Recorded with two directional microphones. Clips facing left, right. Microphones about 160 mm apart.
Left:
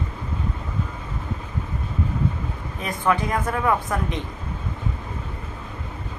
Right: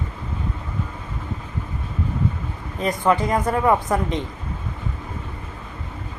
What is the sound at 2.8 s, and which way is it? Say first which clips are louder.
Speech: right 3 dB; 20° right (ahead or behind).